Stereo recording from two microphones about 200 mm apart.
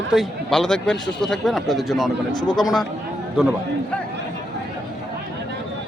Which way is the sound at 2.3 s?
20° left (ahead or behind).